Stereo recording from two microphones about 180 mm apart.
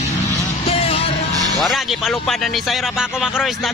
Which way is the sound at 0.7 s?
30° left (ahead or behind).